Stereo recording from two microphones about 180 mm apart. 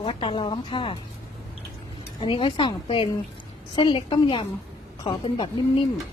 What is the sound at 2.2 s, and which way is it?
A woman's voice, 30° left (ahead or behind).